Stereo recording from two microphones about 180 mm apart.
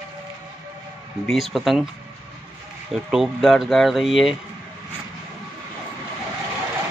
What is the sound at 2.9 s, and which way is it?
Speech, centre (ahead or behind).